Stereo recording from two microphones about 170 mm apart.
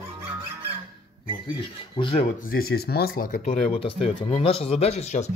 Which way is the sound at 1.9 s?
30° left (ahead or behind).